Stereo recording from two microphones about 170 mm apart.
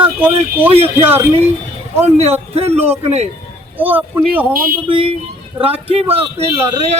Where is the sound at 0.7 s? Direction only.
35° right (ahead or behind).